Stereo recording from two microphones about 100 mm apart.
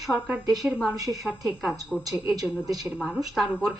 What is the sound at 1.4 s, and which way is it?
Speech, centre (ahead or behind).